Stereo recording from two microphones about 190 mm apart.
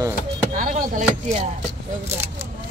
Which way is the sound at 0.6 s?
45° right (ahead or behind).